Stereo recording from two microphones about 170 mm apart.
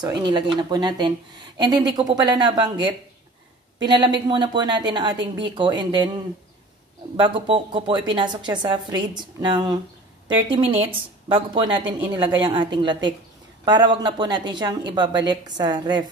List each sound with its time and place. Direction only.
0.2 s a woman's voice: 25° right (ahead or behind)
7.2 s a woman's voice: 30° right (ahead or behind)